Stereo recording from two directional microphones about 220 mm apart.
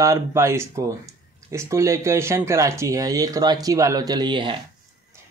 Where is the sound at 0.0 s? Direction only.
15° right (ahead or behind).